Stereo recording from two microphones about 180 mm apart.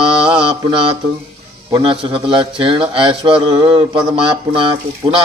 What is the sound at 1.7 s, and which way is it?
A man's voice, 30° right (ahead or behind).